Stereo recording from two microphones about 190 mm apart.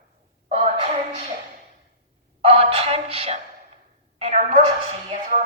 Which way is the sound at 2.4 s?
30° right (ahead or behind).